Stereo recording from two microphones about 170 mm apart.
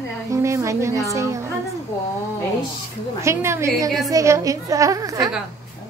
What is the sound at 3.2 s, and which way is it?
A woman's voice, 15° right (ahead or behind).